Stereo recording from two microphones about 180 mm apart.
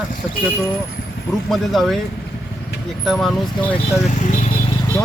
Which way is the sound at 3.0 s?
Centre (ahead or behind).